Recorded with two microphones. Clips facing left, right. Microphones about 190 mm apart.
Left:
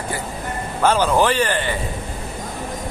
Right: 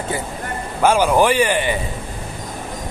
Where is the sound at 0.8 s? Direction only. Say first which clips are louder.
Right 2 dB; 10° right (ahead or behind).